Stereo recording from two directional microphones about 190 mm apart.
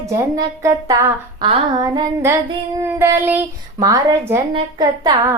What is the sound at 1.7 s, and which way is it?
Female singing, 20° right (ahead or behind).